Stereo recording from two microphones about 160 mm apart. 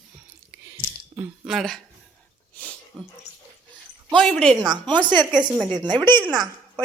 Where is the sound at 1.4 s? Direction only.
Centre (ahead or behind).